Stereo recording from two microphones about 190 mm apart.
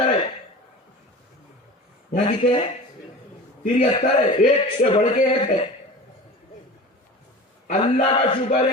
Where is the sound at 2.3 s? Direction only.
30° left (ahead or behind).